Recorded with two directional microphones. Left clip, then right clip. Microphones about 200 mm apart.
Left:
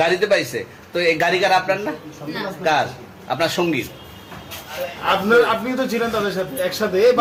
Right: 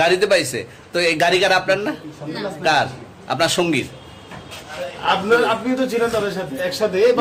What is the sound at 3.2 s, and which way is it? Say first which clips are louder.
Speech: right 2 dB; 30° right (ahead or behind).